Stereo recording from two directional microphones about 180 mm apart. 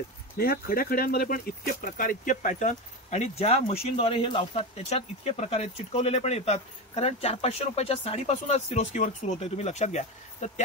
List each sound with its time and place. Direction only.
0.4 s speech: 55° left (ahead or behind); by 10.5 s 40° left (ahead or behind)